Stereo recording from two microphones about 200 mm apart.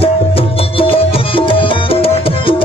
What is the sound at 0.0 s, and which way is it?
Music, 30° left (ahead or behind).